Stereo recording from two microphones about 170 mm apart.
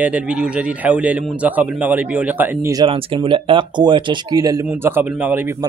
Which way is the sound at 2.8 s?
30° right (ahead or behind).